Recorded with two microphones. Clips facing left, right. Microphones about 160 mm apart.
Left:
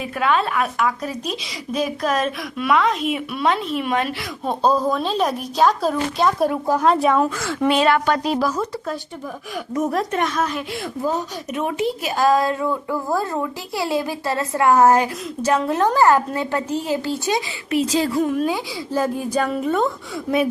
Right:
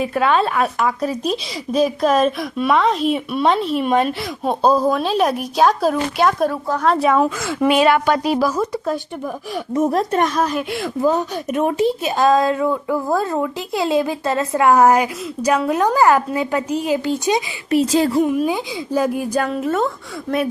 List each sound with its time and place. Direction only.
0.0 s speech: 35° right (ahead or behind)
4.4 s a woman's voice: 10° right (ahead or behind)
6.5 s a woman's voice: 10° left (ahead or behind)
6.8 s a woman's voice: centre (ahead or behind)
9.7 s speech: 30° right (ahead or behind)
10.7 s speech: 65° right (ahead or behind)
11.8 s a woman's voice: 25° right (ahead or behind)
17.7 s speech: 45° right (ahead or behind)
18.2 s a woman's voice: 15° right (ahead or behind); by 20.4 s 10° left (ahead or behind)